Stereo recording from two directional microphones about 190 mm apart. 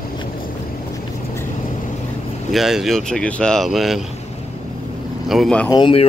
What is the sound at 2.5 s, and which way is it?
Speech, centre (ahead or behind).